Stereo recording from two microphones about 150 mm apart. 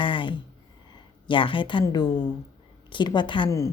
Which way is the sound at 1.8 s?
25° left (ahead or behind).